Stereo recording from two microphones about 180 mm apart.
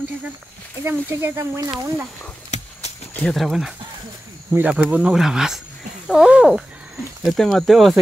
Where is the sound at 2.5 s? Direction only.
35° left (ahead or behind).